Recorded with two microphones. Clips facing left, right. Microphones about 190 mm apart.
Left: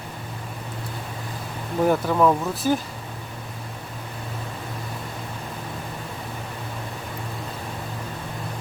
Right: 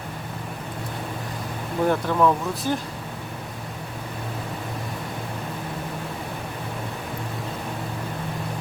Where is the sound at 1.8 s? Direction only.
5° left (ahead or behind).